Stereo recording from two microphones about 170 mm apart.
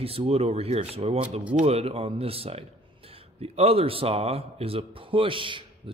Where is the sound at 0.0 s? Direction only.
35° right (ahead or behind).